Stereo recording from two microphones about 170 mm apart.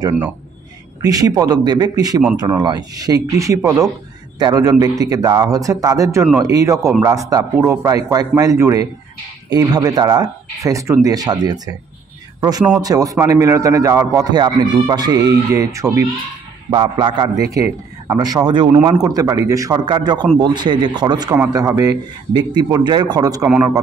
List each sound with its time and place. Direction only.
1.0 s a man's voice: 20° right (ahead or behind)
16.7 s a man's voice: 30° right (ahead or behind)